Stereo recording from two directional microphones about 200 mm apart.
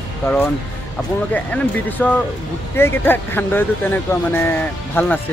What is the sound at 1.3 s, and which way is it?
Speech, 10° left (ahead or behind).